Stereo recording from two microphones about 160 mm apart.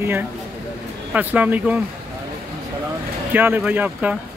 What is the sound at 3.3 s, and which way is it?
Speech, 10° right (ahead or behind).